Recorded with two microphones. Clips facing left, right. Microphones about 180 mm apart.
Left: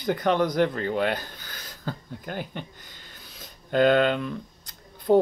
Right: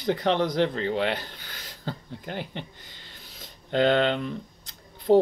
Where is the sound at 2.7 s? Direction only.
50° left (ahead or behind).